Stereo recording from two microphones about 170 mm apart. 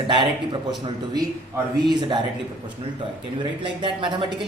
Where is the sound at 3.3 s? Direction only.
30° right (ahead or behind).